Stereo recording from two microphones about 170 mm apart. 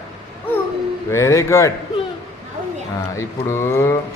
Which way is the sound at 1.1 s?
15° left (ahead or behind).